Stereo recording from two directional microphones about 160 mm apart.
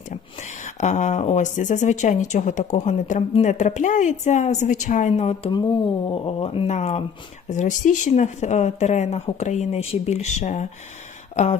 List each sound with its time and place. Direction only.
0.1 s speech: 50° left (ahead or behind)